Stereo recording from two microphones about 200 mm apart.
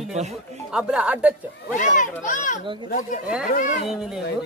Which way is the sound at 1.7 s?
40° left (ahead or behind).